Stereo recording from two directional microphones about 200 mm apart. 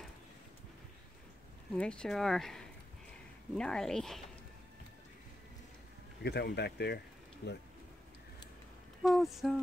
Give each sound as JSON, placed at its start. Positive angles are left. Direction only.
{"t": 1.8, "sound": "speech", "side_deg": 5}
{"t": 6.2, "sound": "speech", "side_deg": 55}
{"t": 9.0, "sound": "speech", "side_deg": 0}